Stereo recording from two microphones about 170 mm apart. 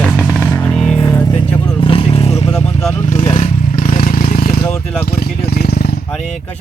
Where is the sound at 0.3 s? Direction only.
10° left (ahead or behind).